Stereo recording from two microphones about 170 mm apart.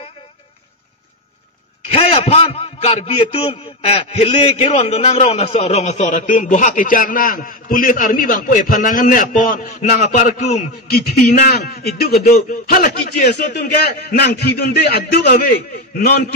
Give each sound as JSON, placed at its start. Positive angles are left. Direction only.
{"t": 2.0, "sound": "a man's voice", "side_deg": 35}
{"t": 10.9, "sound": "a man's voice", "side_deg": 65}